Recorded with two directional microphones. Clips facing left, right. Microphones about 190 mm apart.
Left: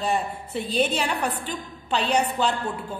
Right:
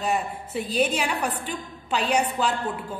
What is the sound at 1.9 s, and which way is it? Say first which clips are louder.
Speech: even; 35° left (ahead or behind).